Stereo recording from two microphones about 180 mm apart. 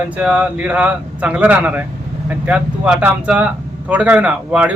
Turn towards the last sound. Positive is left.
turn(degrees=-5)  # may be behind; listen again after turning